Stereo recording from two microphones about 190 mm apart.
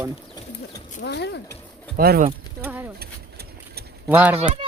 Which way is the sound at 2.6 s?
10° right (ahead or behind).